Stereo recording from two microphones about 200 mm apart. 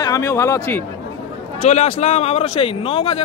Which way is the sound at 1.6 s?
35° left (ahead or behind).